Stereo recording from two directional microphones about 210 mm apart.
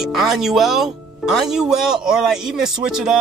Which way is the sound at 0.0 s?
Centre (ahead or behind).